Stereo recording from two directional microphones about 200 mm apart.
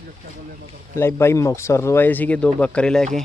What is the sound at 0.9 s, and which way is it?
Speech, 10° left (ahead or behind).